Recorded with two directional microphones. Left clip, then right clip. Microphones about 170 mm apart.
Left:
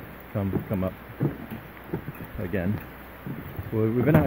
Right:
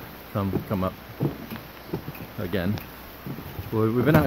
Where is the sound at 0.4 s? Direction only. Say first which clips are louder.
Right 2 dB; 20° right (ahead or behind).